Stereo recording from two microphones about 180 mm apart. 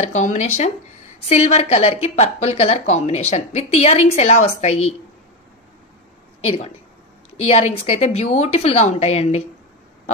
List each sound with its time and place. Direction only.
0.0 s a woman's voice: 40° left (ahead or behind)
6.4 s a woman's voice: 35° left (ahead or behind)